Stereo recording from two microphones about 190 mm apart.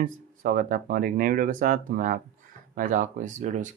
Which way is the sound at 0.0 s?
45° right (ahead or behind).